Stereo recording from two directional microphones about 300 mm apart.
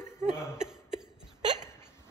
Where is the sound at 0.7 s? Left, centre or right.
Centre.